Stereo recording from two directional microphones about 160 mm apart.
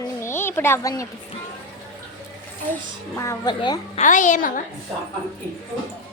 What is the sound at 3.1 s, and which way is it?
Speech, 20° left (ahead or behind).